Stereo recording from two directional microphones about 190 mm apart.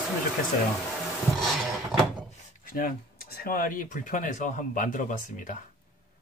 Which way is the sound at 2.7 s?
50° left (ahead or behind).